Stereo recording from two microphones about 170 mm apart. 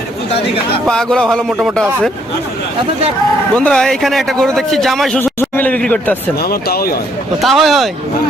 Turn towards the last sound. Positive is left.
turn(degrees=0)  # may be behind; listen again after turning